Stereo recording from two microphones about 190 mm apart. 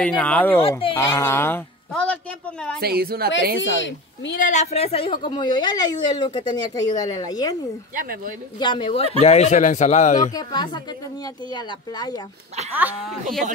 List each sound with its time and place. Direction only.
0.0 s speech: 5° left (ahead or behind)
0.6 s a woman's voice: 30° left (ahead or behind)
0.9 s speech: 15° left (ahead or behind)
1.9 s a sound: 5° left (ahead or behind)
2.8 s a woman's voice: 55° right (ahead or behind)
3.6 s speech: 75° left (ahead or behind)
4.4 s a woman's voice: 40° left (ahead or behind); by 7.5 s 20° left (ahead or behind)
7.9 s speech: 50° right (ahead or behind)
8.5 s a woman's voice: 25° left (ahead or behind)
10.3 s a woman's voice: 20° left (ahead or behind)
12.7 s speech: 10° right (ahead or behind)